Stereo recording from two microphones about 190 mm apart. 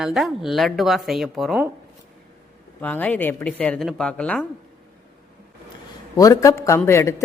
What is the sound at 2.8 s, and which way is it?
Speech, 10° left (ahead or behind).